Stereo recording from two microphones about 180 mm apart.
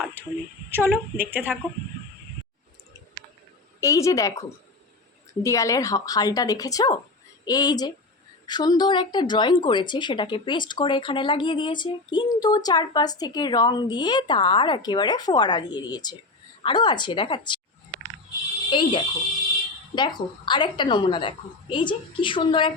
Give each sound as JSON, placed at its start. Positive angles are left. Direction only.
{"t": 0.0, "sound": "a sound", "side_deg": -10}
{"t": 1.2, "sound": "speech", "side_deg": -10}
{"t": 3.8, "sound": "a woman's voice", "side_deg": 15}
{"t": 18.7, "sound": "a woman's voice", "side_deg": 25}